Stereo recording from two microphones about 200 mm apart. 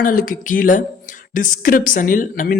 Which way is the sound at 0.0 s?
45° left (ahead or behind).